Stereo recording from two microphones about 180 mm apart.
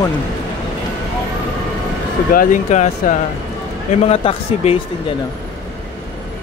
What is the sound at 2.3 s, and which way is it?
Speech, 45° left (ahead or behind).